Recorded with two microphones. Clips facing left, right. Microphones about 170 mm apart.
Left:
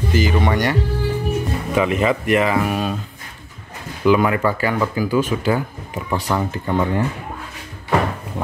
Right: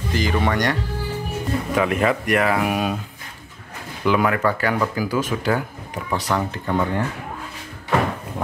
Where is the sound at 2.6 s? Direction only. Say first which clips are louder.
Left 1 dB; 10° right (ahead or behind).